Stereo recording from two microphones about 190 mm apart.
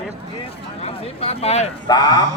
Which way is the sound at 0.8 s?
30° left (ahead or behind).